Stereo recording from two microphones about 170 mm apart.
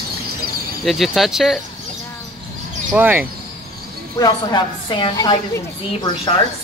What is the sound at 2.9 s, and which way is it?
Speech, 10° right (ahead or behind).